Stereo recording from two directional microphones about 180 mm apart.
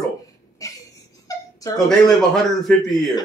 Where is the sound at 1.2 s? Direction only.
20° left (ahead or behind).